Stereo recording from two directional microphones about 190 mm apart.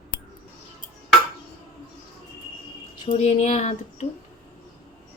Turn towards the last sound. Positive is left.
turn(degrees=35)  # may be behind; listen again after turning